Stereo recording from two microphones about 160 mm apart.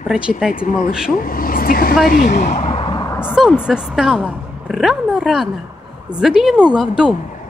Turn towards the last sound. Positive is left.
turn(degrees=-5)  # may be behind; listen again after turning